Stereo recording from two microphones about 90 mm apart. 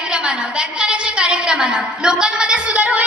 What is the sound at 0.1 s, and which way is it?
A woman's voice, 10° right (ahead or behind).